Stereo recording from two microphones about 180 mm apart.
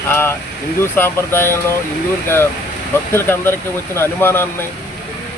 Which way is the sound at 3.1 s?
10° left (ahead or behind).